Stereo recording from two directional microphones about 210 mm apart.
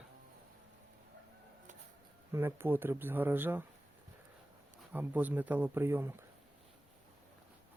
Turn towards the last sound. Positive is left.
turn(degrees=-10)  # may be behind; listen again after turning